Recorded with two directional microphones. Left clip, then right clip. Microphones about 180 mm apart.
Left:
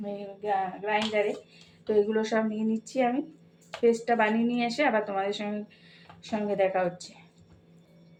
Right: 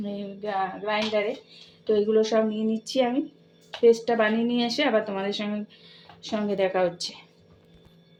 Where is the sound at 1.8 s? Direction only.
25° right (ahead or behind).